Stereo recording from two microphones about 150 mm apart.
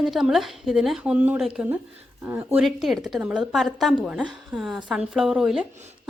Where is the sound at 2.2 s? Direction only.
15° right (ahead or behind).